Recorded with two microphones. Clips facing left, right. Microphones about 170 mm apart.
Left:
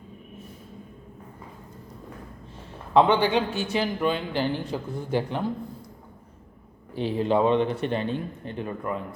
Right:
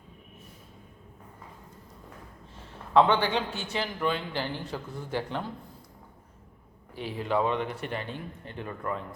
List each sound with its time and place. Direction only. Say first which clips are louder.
2.9 s a man's voice: left 3 dB; 15° left (ahead or behind)
6.9 s speech: left 6 dB; 25° left (ahead or behind)